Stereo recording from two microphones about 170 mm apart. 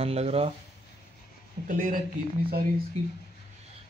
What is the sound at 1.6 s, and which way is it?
Speech, 50° right (ahead or behind).